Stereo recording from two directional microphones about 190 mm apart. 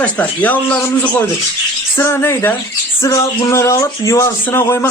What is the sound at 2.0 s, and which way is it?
Speech, 15° left (ahead or behind).